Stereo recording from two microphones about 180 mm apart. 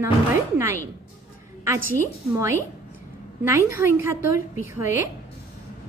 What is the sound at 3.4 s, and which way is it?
A woman's voice, 15° right (ahead or behind).